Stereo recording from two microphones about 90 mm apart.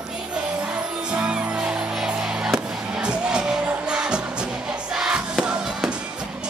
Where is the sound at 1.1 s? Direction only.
10° right (ahead or behind).